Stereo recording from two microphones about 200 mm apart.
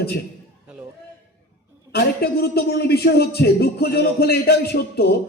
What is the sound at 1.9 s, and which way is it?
A man's voice, 50° left (ahead or behind).